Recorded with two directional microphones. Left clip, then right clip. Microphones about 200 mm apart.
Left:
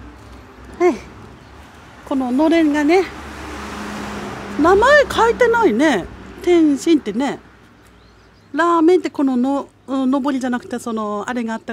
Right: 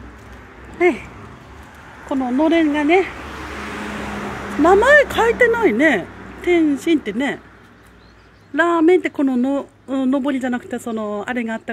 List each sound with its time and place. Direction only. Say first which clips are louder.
0.7 s speech: even; 20° left (ahead or behind)
2.0 s speech: left 1 dB; 20° left (ahead or behind)
4.6 s speech: even; 20° left (ahead or behind)
8.5 s speech: left 1 dB; 20° left (ahead or behind)